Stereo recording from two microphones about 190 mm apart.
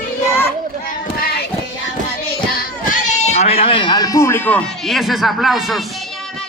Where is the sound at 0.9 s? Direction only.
50° left (ahead or behind).